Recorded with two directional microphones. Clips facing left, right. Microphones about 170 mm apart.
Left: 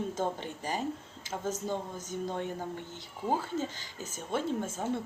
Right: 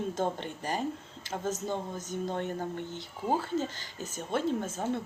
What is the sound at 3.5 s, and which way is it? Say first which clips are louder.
Speech: right 2 dB; 15° left (ahead or behind).